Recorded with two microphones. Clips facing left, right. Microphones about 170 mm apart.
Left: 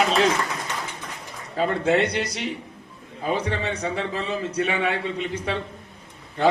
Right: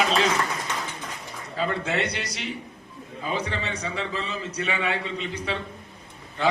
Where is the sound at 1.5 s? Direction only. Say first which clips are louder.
Left 6 dB; 45° left (ahead or behind).